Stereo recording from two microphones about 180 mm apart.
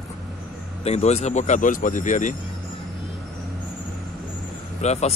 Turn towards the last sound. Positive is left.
turn(degrees=35)  # may be behind; listen again after turning